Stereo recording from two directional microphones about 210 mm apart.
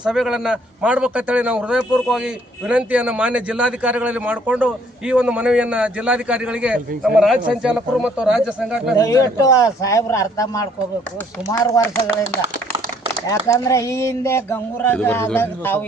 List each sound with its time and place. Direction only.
0.0 s a man's voice: 5° right (ahead or behind)
9.0 s speech: 15° left (ahead or behind)
13.2 s speech: 15° left (ahead or behind)